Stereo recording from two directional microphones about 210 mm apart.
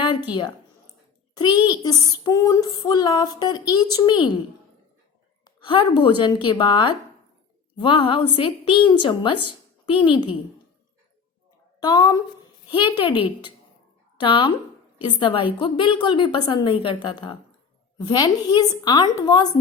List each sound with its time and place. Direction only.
0.3 s female singing: 20° left (ahead or behind)
5.5 s a woman's voice: 25° left (ahead or behind)
6.5 s female singing: 25° left (ahead or behind)
11.8 s female singing: 20° left (ahead or behind)